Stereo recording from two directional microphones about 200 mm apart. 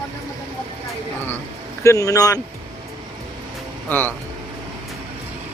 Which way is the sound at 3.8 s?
10° left (ahead or behind).